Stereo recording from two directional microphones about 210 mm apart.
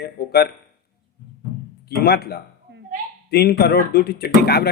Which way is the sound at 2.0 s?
50° left (ahead or behind).